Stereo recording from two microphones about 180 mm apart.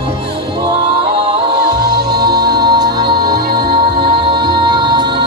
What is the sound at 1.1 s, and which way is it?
Music, 20° right (ahead or behind).